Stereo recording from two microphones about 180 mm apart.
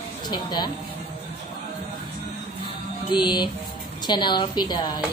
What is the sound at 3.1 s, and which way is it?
A woman's voice, 25° left (ahead or behind).